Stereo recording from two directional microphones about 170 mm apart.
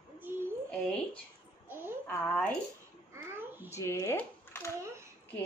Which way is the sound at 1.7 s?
10° right (ahead or behind).